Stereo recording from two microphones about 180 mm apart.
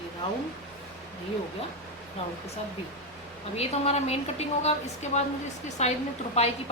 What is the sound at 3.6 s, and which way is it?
A woman's voice, 35° left (ahead or behind).